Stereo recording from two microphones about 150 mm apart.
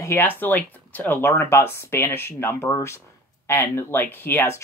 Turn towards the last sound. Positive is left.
turn(degrees=15)  # may be behind; listen again after turning